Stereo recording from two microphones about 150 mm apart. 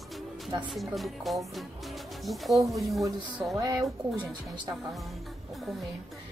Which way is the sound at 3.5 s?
25° right (ahead or behind).